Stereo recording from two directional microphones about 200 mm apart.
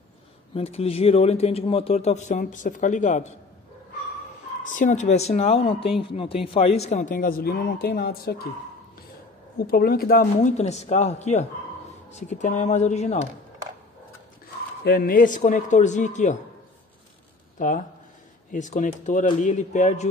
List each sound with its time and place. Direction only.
0.6 s speech: 30° left (ahead or behind)
4.6 s a man's voice: 40° left (ahead or behind)
9.7 s a man's voice: 50° left (ahead or behind)
10.6 s speech: 35° left (ahead or behind)
14.8 s speech: 50° left (ahead or behind)
17.6 s speech: 40° left (ahead or behind)